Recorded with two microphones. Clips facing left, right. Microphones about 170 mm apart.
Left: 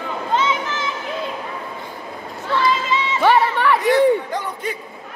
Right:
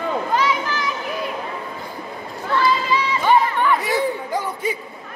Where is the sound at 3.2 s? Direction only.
80° left.